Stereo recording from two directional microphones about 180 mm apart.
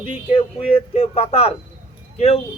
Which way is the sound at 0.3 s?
35° left (ahead or behind).